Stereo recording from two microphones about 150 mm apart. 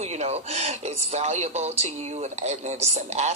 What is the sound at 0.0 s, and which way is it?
Speech, 45° right (ahead or behind).